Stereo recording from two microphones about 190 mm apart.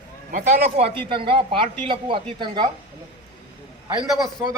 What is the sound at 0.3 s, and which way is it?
Speech, 45° right (ahead or behind).